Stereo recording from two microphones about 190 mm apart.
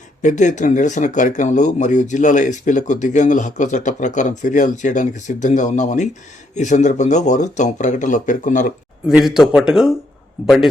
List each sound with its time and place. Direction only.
0.2 s speech: 40° left (ahead or behind)
9.0 s a man's voice: 5° right (ahead or behind)